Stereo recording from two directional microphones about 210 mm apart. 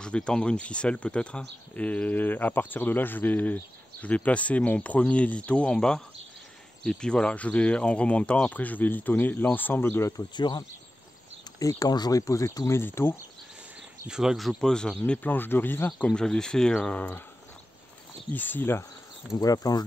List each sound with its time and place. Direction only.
0.0 s speech: 5° left (ahead or behind); by 10.6 s 20° left (ahead or behind)
11.6 s speech: 20° left (ahead or behind)
14.0 s speech: 5° right (ahead or behind)
18.3 s speech: 10° left (ahead or behind)